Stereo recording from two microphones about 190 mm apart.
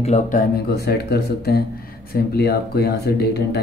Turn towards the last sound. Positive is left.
turn(degrees=60)  # may be behind; listen again after turning